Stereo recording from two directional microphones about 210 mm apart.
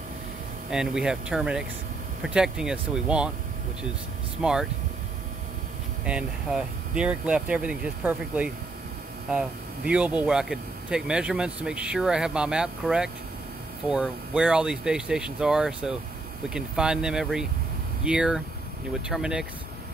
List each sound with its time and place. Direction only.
0.7 s speech: 5° right (ahead or behind)
4.4 s speech: 5° right (ahead or behind)
6.0 s speech: 5° right (ahead or behind)